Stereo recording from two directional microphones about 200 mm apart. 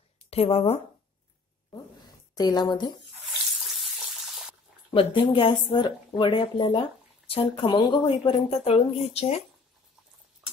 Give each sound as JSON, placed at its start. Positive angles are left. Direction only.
{"t": 0.3, "sound": "speech", "side_deg": 30}
{"t": 2.3, "sound": "speech", "side_deg": 20}
{"t": 4.9, "sound": "speech", "side_deg": 25}